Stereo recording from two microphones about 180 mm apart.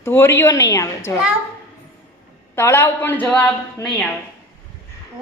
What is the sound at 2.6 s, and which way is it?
A woman's voice, 15° left (ahead or behind).